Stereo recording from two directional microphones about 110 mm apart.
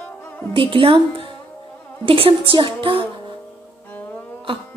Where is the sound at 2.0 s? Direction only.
55° right (ahead or behind).